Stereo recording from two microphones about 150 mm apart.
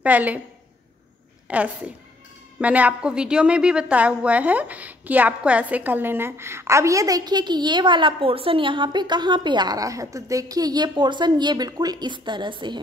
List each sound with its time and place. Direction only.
0.0 s a woman's voice: 10° right (ahead or behind)
1.5 s a woman's voice: 10° right (ahead or behind); by 12.8 s 30° right (ahead or behind)